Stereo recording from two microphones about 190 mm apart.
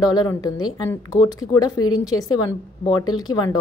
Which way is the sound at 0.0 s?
20° left (ahead or behind).